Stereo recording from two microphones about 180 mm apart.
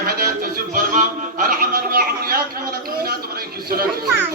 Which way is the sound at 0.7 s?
50° right (ahead or behind).